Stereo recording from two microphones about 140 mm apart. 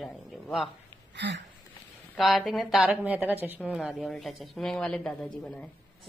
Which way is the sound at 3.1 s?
15° right (ahead or behind).